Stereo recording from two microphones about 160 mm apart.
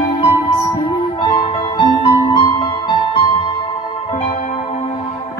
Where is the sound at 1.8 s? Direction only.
35° left (ahead or behind).